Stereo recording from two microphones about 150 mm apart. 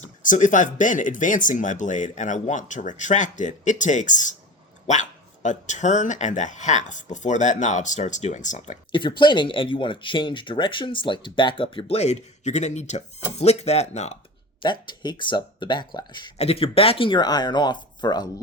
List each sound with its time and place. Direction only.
0.2 s speech: 60° left (ahead or behind)
8.9 s speech: 30° left (ahead or behind); by 14.2 s 50° left (ahead or behind)
14.6 s speech: 30° left (ahead or behind)
16.4 s speech: 40° left (ahead or behind)